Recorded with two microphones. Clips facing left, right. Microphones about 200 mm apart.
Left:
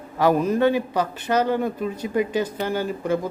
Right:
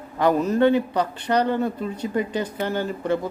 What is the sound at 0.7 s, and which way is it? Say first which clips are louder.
Speech: right 1 dB; 20° right (ahead or behind).